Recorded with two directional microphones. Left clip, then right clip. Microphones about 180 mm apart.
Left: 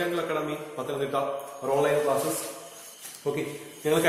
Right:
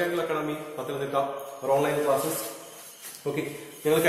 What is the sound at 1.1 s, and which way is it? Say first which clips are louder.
Speech: right 2 dB; 20° left (ahead or behind).